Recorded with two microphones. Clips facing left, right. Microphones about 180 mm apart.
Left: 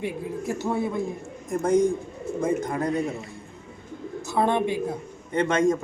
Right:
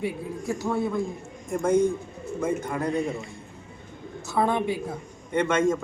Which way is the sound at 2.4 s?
35° left (ahead or behind).